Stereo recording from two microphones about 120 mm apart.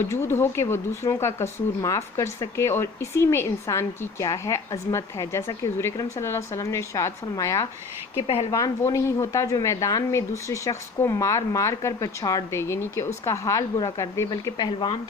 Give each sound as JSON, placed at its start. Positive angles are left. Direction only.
{"t": 0.0, "sound": "speech", "side_deg": 20}
{"t": 14.4, "sound": "speech", "side_deg": 40}